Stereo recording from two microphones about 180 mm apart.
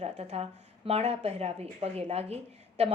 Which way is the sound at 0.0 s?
35° right (ahead or behind).